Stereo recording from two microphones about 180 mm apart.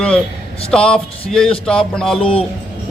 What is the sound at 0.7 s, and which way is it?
A man's voice, 5° left (ahead or behind).